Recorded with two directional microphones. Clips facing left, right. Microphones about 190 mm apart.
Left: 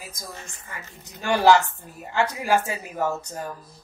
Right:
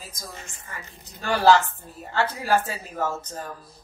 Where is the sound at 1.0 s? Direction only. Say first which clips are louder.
Left 1 dB; 15° left (ahead or behind).